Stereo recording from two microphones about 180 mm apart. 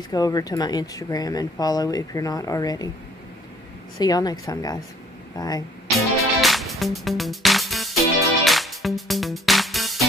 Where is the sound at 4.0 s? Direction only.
20° left (ahead or behind).